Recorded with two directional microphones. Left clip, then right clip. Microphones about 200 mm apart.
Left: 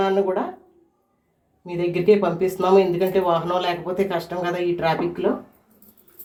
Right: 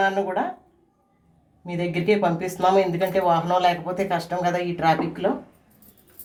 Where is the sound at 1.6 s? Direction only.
10° left (ahead or behind).